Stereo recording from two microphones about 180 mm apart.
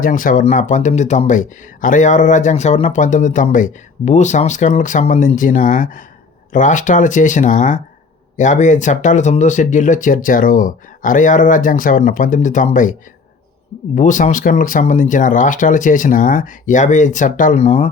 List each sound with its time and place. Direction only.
0.0 s speech: 50° left (ahead or behind)